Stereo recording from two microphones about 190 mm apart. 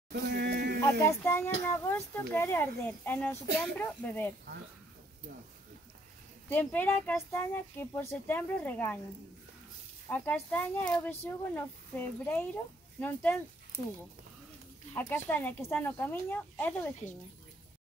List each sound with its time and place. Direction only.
0.1 s a sound: 60° right (ahead or behind)
0.9 s speech: 10° left (ahead or behind)
6.5 s speech: 10° left (ahead or behind)
10.0 s speech: 10° left (ahead or behind)
15.0 s speech: 10° left (ahead or behind)